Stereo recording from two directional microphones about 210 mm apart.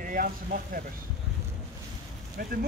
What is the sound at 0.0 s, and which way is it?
Speech, 40° right (ahead or behind).